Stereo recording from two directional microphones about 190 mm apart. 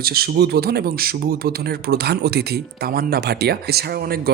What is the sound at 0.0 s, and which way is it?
Speech, 55° right (ahead or behind).